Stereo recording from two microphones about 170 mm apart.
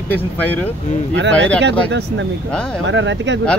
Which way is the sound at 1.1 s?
90° right.